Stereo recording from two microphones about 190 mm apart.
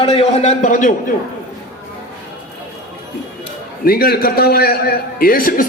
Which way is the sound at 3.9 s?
55° left (ahead or behind).